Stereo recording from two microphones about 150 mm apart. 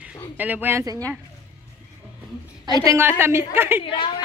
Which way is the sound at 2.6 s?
25° right (ahead or behind).